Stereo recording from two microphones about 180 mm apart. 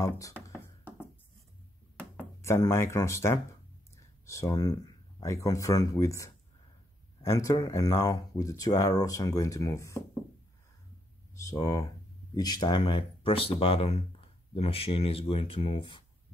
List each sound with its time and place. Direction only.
0.6 s a sound: 10° left (ahead or behind)
3.9 s speech: 15° left (ahead or behind)
11.3 s speech: 15° left (ahead or behind)